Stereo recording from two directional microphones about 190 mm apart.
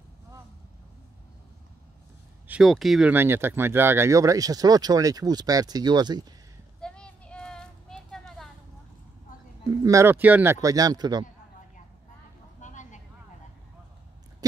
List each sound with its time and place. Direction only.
2.4 s speech: 5° right (ahead or behind); by 6.2 s 20° right (ahead or behind)
6.8 s a sound: 5° left (ahead or behind)
9.8 s speech: 15° right (ahead or behind)
12.5 s vehicle: 40° left (ahead or behind)